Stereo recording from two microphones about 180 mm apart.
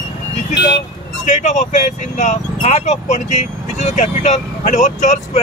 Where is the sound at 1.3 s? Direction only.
40° left (ahead or behind).